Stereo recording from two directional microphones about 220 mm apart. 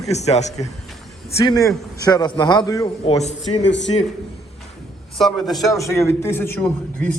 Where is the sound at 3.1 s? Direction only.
30° left (ahead or behind).